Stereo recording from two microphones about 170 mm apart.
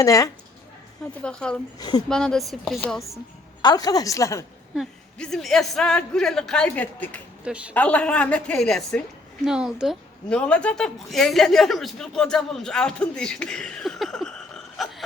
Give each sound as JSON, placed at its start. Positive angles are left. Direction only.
{"t": 0.0, "sound": "a woman's voice", "side_deg": 20}
{"t": 1.2, "sound": "a woman's voice", "side_deg": 5}
{"t": 1.8, "sound": "a woman's voice", "side_deg": 25}
{"t": 2.0, "sound": "a woman's voice", "side_deg": 5}
{"t": 3.6, "sound": "a woman's voice", "side_deg": 25}
{"t": 4.7, "sound": "a woman's voice", "side_deg": 0}
{"t": 7.4, "sound": "a woman's voice", "side_deg": -5}
{"t": 7.7, "sound": "a woman's voice", "side_deg": 10}